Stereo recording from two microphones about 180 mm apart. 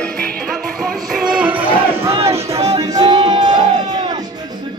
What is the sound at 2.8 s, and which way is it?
Music, 20° right (ahead or behind).